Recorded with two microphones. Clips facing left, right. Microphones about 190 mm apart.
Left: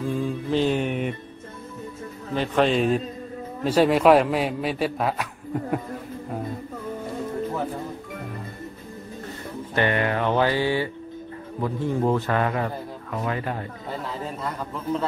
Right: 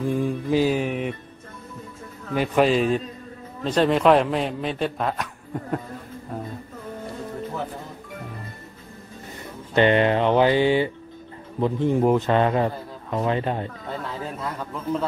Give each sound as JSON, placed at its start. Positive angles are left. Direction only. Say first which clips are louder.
{"t": 0.1, "sound": "mantra", "louder": "right 2 dB", "side_deg": -10}
{"t": 2.3, "sound": "a man's voice", "louder": "right 2 dB", "side_deg": -10}
{"t": 9.8, "sound": "a man's voice", "louder": "right 5 dB", "side_deg": -25}
{"t": 14.2, "sound": "a man's voice", "louder": "even", "side_deg": 0}